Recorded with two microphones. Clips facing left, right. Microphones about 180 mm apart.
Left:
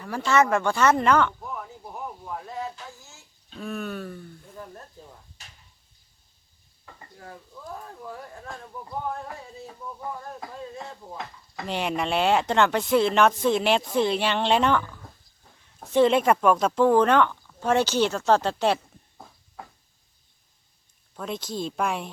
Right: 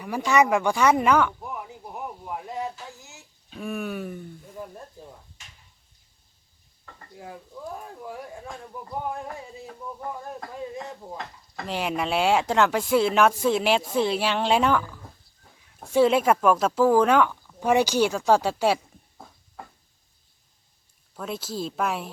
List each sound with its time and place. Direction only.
0.0 s a sound: 15° right (ahead or behind)
5.4 s a sound: 35° left (ahead or behind)
8.0 s speech: 10° right (ahead or behind)
9.6 s speech: centre (ahead or behind)
10.6 s speech: 15° right (ahead or behind)
11.2 s speech: centre (ahead or behind)
21.2 s speech: 5° right (ahead or behind)